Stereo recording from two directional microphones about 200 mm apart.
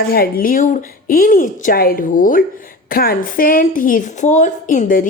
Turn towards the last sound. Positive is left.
turn(degrees=40)  # may be behind; listen again after turning